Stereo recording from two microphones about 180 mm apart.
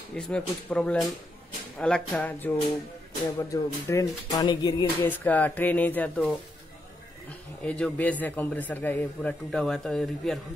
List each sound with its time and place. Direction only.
0.1 s a man's voice: 5° left (ahead or behind); by 4.9 s 25° left (ahead or behind)
5.0 s a man's voice: 10° left (ahead or behind)